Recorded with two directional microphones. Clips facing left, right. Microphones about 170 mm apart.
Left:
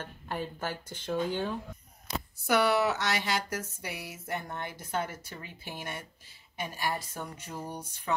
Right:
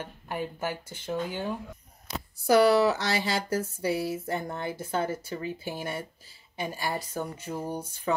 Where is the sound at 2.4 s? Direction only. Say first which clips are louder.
Right 6 dB; 35° right (ahead or behind).